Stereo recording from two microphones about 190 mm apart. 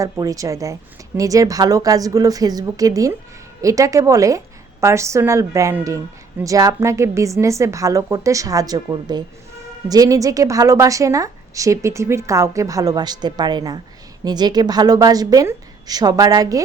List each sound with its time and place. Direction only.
0.0 s a woman's voice: 20° right (ahead or behind)